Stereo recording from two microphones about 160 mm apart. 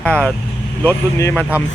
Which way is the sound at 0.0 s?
5° left (ahead or behind).